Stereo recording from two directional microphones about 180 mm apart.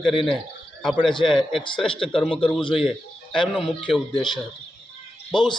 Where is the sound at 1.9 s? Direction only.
30° left (ahead or behind).